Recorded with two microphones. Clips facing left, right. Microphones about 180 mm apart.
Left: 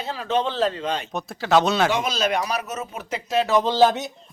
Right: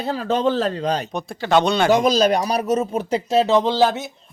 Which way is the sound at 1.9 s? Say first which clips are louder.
Right 7 dB; 40° right (ahead or behind).